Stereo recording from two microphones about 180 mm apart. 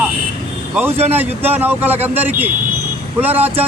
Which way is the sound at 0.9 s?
35° right (ahead or behind).